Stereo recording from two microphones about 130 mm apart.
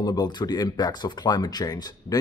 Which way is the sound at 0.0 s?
30° left (ahead or behind).